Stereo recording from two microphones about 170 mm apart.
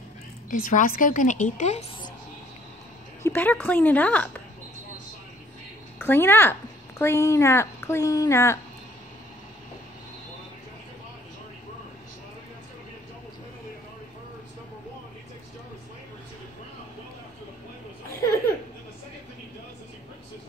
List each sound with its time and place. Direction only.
0.5 s a woman's voice: 50° left (ahead or behind)
3.2 s speech: 15° left (ahead or behind)
5.9 s speech: 10° left (ahead or behind)